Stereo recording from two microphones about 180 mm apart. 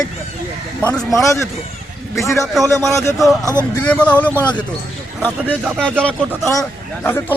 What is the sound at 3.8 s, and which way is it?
Speech, 10° left (ahead or behind).